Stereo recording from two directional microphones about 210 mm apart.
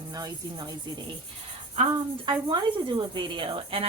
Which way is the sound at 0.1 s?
20° right (ahead or behind).